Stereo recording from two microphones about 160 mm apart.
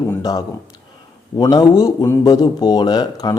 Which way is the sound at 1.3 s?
25° left (ahead or behind).